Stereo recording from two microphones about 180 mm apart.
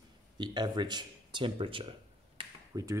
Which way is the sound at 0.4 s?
25° right (ahead or behind).